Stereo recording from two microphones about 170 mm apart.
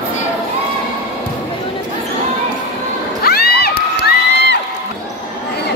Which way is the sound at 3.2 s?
65° left (ahead or behind).